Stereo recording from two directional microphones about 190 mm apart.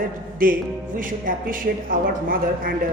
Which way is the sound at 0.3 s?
45° right (ahead or behind).